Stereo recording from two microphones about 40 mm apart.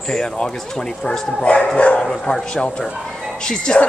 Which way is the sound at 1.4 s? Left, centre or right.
Left.